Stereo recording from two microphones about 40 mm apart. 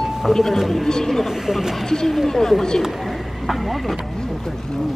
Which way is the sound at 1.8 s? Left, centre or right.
Centre.